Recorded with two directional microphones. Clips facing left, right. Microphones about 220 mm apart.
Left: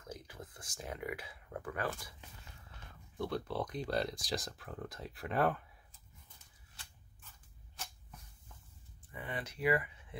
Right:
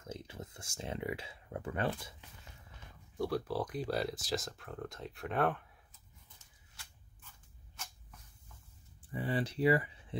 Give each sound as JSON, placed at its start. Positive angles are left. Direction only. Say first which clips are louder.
{"t": 0.0, "sound": "speech", "louder": "right 3 dB", "side_deg": -25}
{"t": 3.2, "sound": "speech", "louder": "right 3 dB", "side_deg": -10}
{"t": 9.1, "sound": "speech", "louder": "right 8 dB", "side_deg": -30}